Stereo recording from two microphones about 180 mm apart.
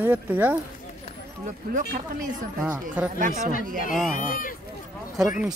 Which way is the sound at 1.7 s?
45° right (ahead or behind).